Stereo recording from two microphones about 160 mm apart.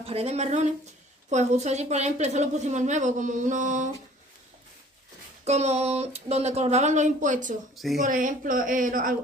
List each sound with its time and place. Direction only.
0.0 s a woman's voice: 40° right (ahead or behind)
5.4 s a woman's voice: 45° right (ahead or behind)
7.7 s a woman's voice: centre (ahead or behind)
8.0 s speech: 55° right (ahead or behind)